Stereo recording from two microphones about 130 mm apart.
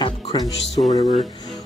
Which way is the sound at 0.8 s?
60° left (ahead or behind).